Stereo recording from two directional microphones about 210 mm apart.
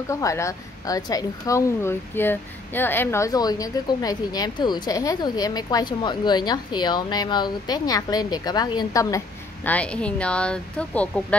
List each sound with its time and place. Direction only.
0.1 s a woman's voice: 15° left (ahead or behind)